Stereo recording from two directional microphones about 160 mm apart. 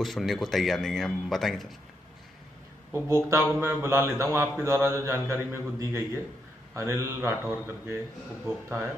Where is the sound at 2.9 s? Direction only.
20° right (ahead or behind).